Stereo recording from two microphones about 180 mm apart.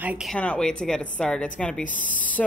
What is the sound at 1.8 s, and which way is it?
Speech, 45° left (ahead or behind).